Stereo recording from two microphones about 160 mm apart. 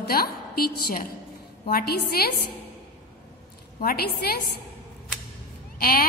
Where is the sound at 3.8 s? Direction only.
70° left (ahead or behind).